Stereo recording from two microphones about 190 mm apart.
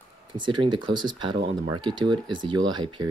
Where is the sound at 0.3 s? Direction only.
25° right (ahead or behind).